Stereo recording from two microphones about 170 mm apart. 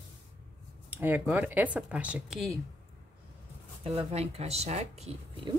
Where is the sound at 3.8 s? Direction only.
35° right (ahead or behind).